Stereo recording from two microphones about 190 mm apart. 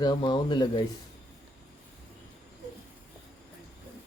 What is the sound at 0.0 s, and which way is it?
Speech, 25° left (ahead or behind).